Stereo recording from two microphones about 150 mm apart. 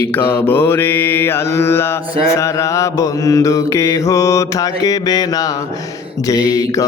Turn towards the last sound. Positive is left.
turn(degrees=25)  # may be behind; listen again after turning